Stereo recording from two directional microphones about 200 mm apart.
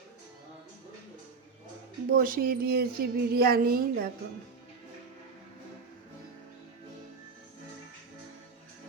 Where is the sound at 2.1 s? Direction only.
45° right (ahead or behind).